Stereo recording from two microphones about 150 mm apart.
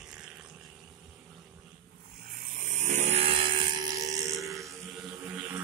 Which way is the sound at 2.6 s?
55° right (ahead or behind).